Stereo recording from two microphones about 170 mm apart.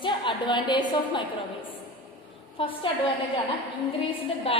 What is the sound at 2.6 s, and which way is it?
Speech, 30° left (ahead or behind).